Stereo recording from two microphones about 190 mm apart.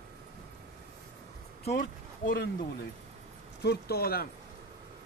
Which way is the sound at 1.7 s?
45° left (ahead or behind).